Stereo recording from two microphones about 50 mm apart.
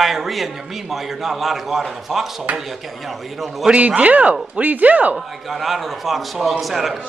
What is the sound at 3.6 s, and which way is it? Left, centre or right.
Speech, right.